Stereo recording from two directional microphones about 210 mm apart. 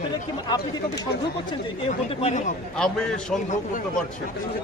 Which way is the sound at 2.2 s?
35° left (ahead or behind).